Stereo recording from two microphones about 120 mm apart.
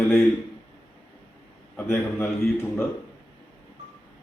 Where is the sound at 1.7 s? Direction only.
15° left (ahead or behind).